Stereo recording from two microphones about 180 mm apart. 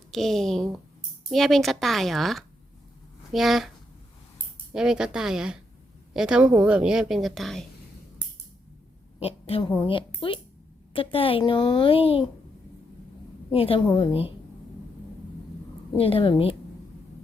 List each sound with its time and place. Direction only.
0.1 s speech: centre (ahead or behind)
4.7 s speech: 5° right (ahead or behind)
9.2 s a woman's voice: 30° left (ahead or behind)
13.5 s a woman's voice: 30° left (ahead or behind)
16.0 s a woman's voice: 30° left (ahead or behind)